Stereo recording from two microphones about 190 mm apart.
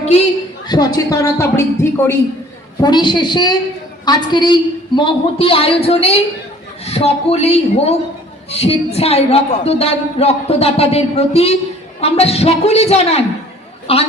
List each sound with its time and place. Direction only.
0.7 s speech: 20° left (ahead or behind)
2.8 s a woman's voice: 25° left (ahead or behind)